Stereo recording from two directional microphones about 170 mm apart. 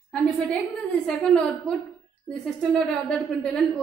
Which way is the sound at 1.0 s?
5° left (ahead or behind).